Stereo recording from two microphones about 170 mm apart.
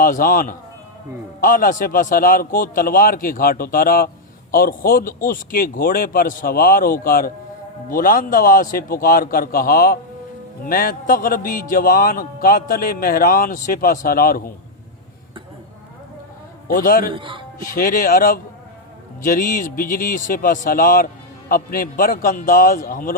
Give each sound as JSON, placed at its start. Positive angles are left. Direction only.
{"t": 0.0, "sound": "speech", "side_deg": 55}
{"t": 16.7, "sound": "speech", "side_deg": 55}
{"t": 17.1, "sound": "speech", "side_deg": -30}
{"t": 17.7, "sound": "speech", "side_deg": 55}